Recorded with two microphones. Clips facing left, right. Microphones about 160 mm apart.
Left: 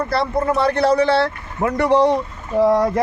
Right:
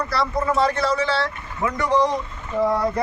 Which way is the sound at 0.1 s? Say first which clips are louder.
Left 2 dB; 55° left (ahead or behind).